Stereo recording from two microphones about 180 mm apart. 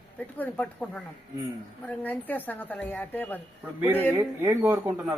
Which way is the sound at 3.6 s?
10° right (ahead or behind).